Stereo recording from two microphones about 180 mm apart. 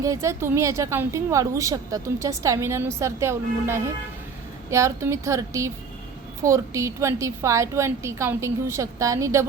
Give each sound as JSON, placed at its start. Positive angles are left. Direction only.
{"t": 0.0, "sound": "a woman's voice", "side_deg": -15}